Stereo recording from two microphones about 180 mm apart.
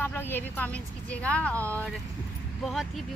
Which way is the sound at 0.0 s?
10° left (ahead or behind).